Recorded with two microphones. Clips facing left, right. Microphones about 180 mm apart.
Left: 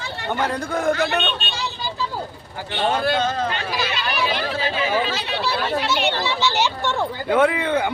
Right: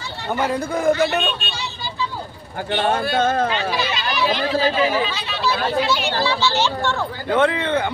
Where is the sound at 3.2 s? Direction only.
50° right (ahead or behind).